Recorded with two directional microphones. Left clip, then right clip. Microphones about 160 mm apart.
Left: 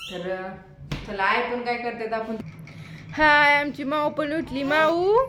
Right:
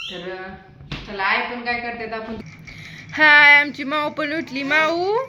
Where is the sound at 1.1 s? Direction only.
20° left (ahead or behind).